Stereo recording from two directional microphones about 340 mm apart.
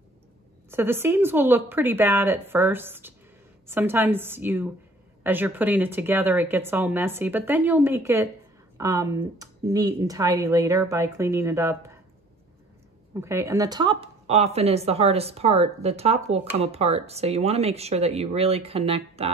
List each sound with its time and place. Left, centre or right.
0.7 s speech: centre
13.1 s speech: centre